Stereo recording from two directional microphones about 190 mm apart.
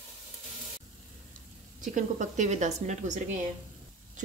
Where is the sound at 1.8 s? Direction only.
40° right (ahead or behind).